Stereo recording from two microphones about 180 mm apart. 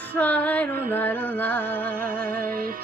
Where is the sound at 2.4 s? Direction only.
55° right (ahead or behind).